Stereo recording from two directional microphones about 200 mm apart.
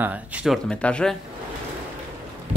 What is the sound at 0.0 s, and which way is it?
Speech, 5° right (ahead or behind).